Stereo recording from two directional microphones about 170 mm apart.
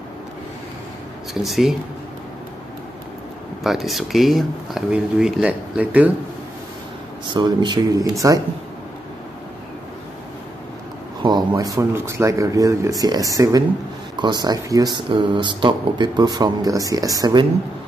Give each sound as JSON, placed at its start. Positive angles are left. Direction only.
{"t": 1.4, "sound": "speech", "side_deg": 0}
{"t": 3.6, "sound": "speech", "side_deg": 0}
{"t": 7.2, "sound": "speech", "side_deg": -25}
{"t": 11.2, "sound": "speech", "side_deg": -25}